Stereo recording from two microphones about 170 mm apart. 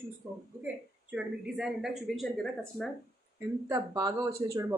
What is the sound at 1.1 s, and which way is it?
Speech, 5° right (ahead or behind).